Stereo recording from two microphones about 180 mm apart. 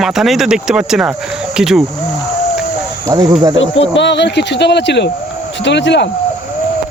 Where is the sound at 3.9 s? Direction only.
80° left.